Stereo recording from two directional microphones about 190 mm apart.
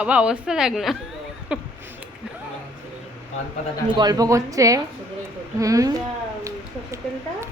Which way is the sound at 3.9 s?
20° right (ahead or behind).